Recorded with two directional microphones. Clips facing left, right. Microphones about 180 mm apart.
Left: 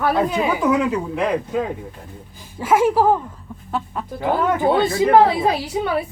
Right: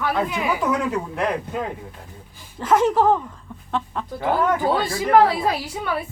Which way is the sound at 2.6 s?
10° left (ahead or behind).